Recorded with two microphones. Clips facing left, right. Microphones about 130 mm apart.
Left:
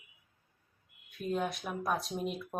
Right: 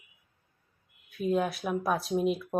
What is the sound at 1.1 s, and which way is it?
Speech, 5° right (ahead or behind).